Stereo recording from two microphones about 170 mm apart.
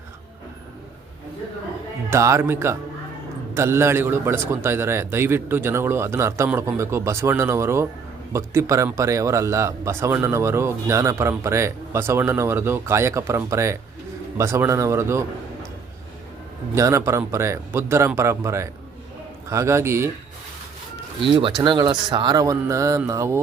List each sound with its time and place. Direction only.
2.0 s a man's voice: 15° right (ahead or behind)
16.7 s a man's voice: 15° right (ahead or behind)
21.6 s speech: 30° right (ahead or behind)